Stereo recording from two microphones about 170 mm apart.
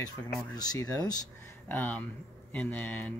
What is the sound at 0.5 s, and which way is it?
Speech, 25° left (ahead or behind).